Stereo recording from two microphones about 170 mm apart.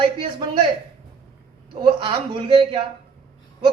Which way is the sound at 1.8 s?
30° right (ahead or behind).